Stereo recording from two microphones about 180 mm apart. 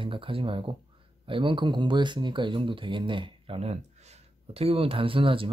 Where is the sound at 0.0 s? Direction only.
30° right (ahead or behind).